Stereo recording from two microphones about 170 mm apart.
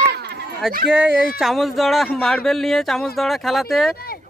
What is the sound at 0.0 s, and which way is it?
Run, 70° right (ahead or behind).